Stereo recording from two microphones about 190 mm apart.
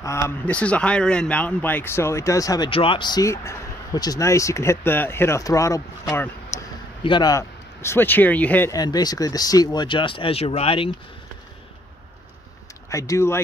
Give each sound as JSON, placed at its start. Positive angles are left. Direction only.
{"t": 0.0, "sound": "speech", "side_deg": 15}
{"t": 7.0, "sound": "speech", "side_deg": 25}
{"t": 12.9, "sound": "speech", "side_deg": 15}